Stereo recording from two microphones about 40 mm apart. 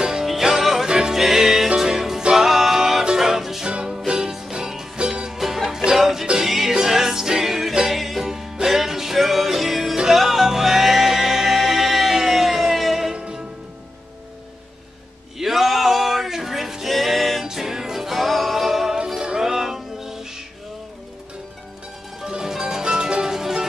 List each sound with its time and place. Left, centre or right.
0.0 s music: centre
3.6 s music: centre
5.4 s music: centre
15.3 s music: centre
17.5 s music: centre
19.1 s music: right
19.4 s music: centre
22.2 s music: centre